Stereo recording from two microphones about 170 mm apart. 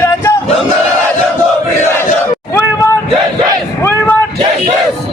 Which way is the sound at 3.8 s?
15° left (ahead or behind).